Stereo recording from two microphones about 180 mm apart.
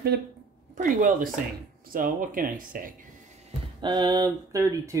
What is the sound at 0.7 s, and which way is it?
Speech, 50° right (ahead or behind).